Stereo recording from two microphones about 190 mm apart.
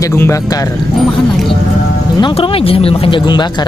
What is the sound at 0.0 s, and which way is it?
Speech, 15° left (ahead or behind).